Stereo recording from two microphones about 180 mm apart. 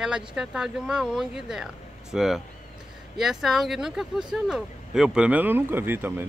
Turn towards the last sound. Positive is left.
turn(degrees=-10)  # may be behind; listen again after turning